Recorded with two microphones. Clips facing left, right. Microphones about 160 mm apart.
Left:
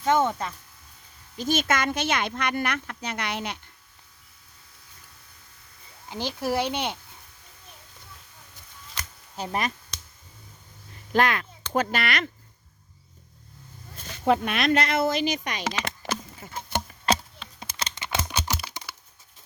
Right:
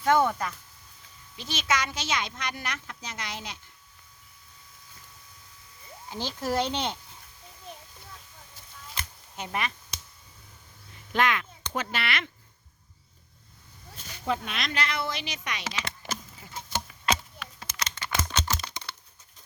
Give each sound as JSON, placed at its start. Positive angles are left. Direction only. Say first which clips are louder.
{"t": 0.0, "sound": "speech", "louder": "even", "side_deg": 20}
{"t": 1.4, "sound": "speech", "louder": "left 5 dB", "side_deg": 50}
{"t": 6.1, "sound": "speech", "louder": "left 3 dB", "side_deg": 15}
{"t": 9.3, "sound": "speech", "louder": "left 4 dB", "side_deg": 35}
{"t": 11.1, "sound": "speech", "louder": "left 3 dB", "side_deg": 40}
{"t": 14.3, "sound": "speech", "louder": "left 9 dB", "side_deg": 60}
{"t": 17.1, "sound": "a sound", "louder": "left 4 dB", "side_deg": 30}
{"t": 17.9, "sound": "computer keyboard", "louder": "left 1 dB", "side_deg": 20}